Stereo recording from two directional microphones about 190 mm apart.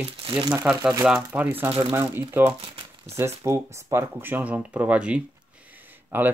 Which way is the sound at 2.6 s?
30° right (ahead or behind).